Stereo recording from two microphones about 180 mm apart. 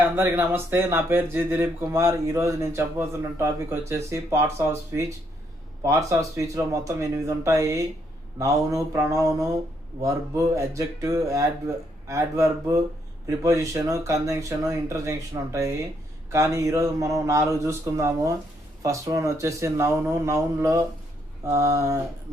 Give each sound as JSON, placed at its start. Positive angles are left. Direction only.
{"t": 0.2, "sound": "speech", "side_deg": -10}